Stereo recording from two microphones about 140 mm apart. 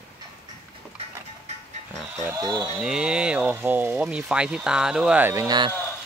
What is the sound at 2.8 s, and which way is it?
Speech, 5° right (ahead or behind).